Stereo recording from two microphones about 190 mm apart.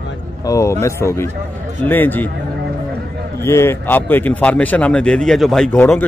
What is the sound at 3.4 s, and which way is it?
A man's voice, 15° left (ahead or behind).